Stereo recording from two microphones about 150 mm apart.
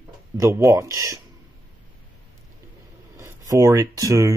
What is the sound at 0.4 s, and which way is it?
Speech, 20° right (ahead or behind).